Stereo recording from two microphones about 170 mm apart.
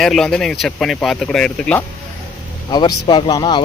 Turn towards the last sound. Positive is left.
turn(degrees=25)  # may be behind; listen again after turning